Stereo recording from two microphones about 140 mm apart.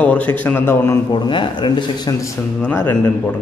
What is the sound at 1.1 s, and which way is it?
Speech, 35° left (ahead or behind).